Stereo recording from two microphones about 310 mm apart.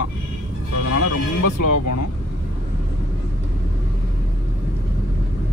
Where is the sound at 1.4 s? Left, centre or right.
Left.